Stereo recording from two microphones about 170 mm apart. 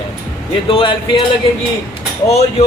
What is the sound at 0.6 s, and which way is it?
Speech, 30° left (ahead or behind).